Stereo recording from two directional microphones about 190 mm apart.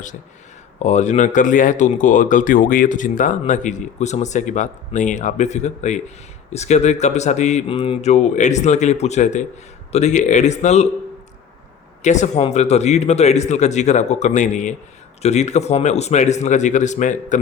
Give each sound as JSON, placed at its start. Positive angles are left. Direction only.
{"t": 0.8, "sound": "speech", "side_deg": 40}
{"t": 12.0, "sound": "speech", "side_deg": 40}